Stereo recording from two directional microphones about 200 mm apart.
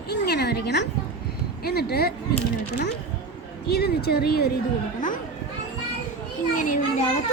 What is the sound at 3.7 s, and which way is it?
Speech, 55° left (ahead or behind).